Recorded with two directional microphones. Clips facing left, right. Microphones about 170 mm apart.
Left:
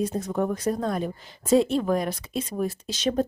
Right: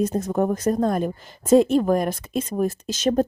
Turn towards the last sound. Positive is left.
turn(degrees=-45)  # may be behind; listen again after turning